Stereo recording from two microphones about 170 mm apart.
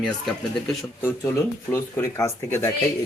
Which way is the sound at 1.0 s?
15° left (ahead or behind).